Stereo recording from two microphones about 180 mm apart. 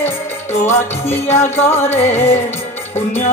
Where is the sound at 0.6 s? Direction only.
15° left (ahead or behind).